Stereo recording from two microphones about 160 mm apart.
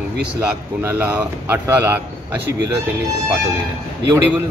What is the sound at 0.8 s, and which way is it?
Speech, 10° right (ahead or behind).